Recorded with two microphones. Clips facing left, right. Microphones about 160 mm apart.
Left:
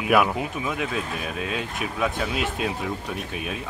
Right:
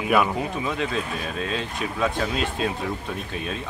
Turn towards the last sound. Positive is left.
turn(degrees=10)  # may be behind; listen again after turning